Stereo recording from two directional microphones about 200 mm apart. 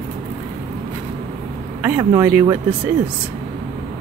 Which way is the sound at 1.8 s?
10° right (ahead or behind).